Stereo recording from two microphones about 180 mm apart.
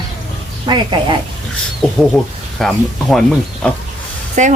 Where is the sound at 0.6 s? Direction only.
25° right (ahead or behind).